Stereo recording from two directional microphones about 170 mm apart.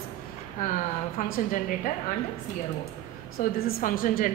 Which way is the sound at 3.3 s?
60° left (ahead or behind).